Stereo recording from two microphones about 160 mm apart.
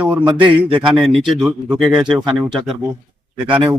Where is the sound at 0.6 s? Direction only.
30° right (ahead or behind).